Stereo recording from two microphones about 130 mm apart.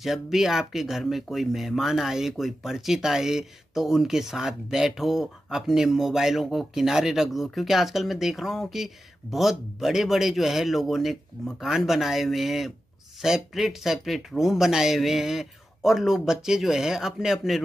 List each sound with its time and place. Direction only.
0.0 s speech: centre (ahead or behind)